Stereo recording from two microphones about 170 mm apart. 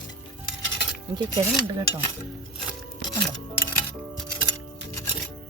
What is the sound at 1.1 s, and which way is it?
Cutlery, 25° right (ahead or behind).